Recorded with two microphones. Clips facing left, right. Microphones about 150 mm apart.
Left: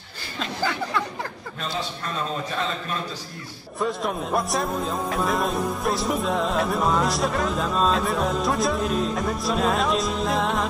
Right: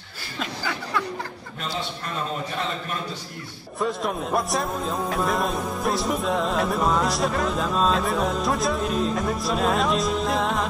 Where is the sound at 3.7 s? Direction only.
Centre (ahead or behind).